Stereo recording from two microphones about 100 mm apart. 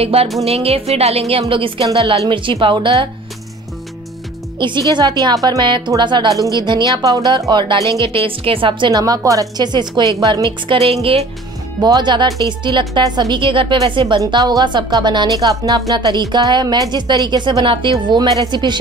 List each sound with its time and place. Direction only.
0.0 s a woman's voice: 80° right
1.5 s a woman's voice: 60° right (ahead or behind)
4.6 s a woman's voice: 50° right (ahead or behind); by 5.6 s 35° right (ahead or behind)
5.6 s a woman's voice: 50° right (ahead or behind)
7.0 s a woman's voice: 35° right (ahead or behind); by 7.8 s 50° right (ahead or behind)
7.8 s a woman's voice: 30° left (ahead or behind)
8.1 s a woman's voice: 65° right (ahead or behind)
8.9 s a woman's voice: 40° right (ahead or behind)
10.7 s a woman's voice: 80° right
11.8 s a woman's voice: 45° right (ahead or behind)
14.3 s a woman's voice: 45° right (ahead or behind)